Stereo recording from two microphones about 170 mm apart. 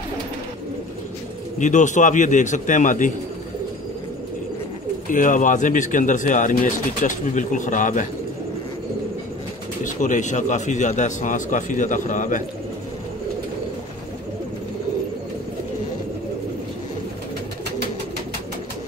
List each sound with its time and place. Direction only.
1.6 s speech: 45° left (ahead or behind)
5.1 s speech: 50° left (ahead or behind)
9.8 s speech: 45° left (ahead or behind)